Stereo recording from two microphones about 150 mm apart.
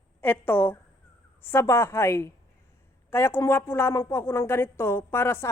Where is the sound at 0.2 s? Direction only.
15° left (ahead or behind).